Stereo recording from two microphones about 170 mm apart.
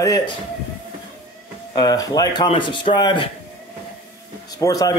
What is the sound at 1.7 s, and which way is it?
A man's voice, 20° left (ahead or behind).